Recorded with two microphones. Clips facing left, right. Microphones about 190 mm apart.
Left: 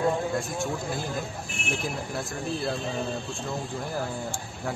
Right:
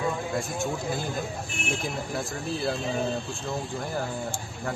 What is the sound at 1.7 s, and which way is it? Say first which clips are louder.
Speech: even; centre (ahead or behind).